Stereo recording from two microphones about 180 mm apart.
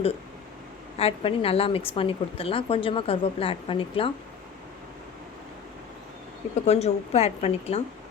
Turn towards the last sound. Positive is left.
turn(degrees=35)  # may be behind; listen again after turning